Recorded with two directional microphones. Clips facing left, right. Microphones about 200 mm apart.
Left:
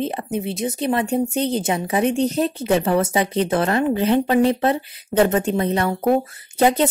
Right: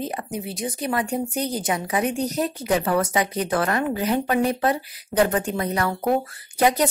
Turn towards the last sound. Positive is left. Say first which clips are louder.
# left 3 dB
turn(degrees=25)  # may be behind; listen again after turning